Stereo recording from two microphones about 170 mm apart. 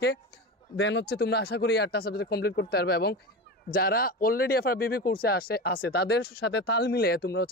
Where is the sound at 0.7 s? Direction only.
90° left.